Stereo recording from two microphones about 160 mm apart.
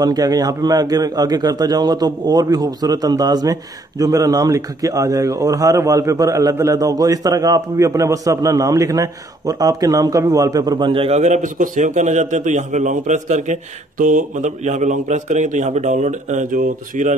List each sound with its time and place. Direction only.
0.0 s a man's voice: 25° right (ahead or behind); by 17.2 s 55° right (ahead or behind)